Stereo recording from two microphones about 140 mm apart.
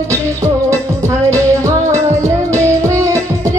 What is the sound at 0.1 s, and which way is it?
Music, 20° right (ahead or behind).